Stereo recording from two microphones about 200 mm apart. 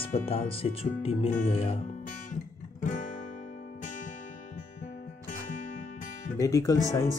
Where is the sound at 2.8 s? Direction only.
40° left (ahead or behind).